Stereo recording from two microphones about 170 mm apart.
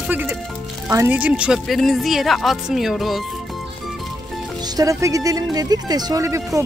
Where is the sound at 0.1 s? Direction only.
10° right (ahead or behind).